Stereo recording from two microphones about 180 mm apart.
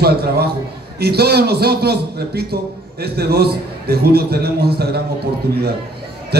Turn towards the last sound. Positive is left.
turn(degrees=-65)  # may be behind; listen again after turning